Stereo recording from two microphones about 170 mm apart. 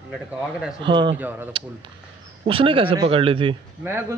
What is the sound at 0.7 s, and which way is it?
Speech, 30° right (ahead or behind).